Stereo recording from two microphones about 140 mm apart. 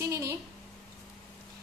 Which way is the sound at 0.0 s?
20° right (ahead or behind).